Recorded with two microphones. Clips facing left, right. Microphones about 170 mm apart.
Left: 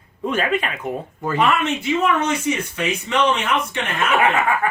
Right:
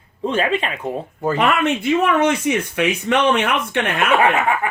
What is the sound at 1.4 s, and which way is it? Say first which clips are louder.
Speech: even; 60° right (ahead or behind).